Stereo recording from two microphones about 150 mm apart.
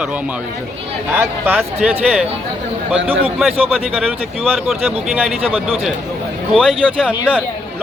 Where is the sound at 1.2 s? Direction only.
10° right (ahead or behind).